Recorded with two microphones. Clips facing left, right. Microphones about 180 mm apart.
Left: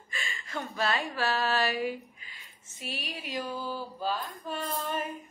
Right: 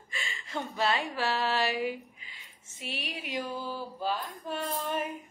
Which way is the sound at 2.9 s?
20° right (ahead or behind).